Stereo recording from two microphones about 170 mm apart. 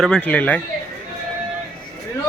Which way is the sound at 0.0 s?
5° left (ahead or behind).